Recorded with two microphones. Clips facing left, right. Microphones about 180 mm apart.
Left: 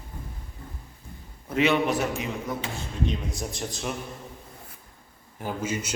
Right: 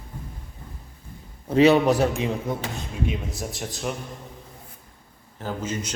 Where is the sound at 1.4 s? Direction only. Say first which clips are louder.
Right 6 dB; 35° right (ahead or behind).